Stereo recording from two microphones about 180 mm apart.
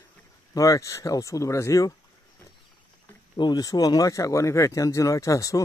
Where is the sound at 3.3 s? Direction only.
25° left (ahead or behind).